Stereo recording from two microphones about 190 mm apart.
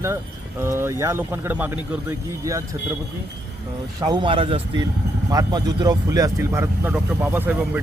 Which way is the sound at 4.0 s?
20° right (ahead or behind).